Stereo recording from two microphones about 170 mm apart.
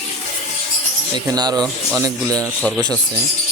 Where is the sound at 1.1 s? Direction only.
25° right (ahead or behind).